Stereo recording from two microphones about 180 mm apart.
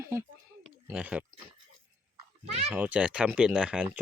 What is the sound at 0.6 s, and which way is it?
Oink, 5° right (ahead or behind).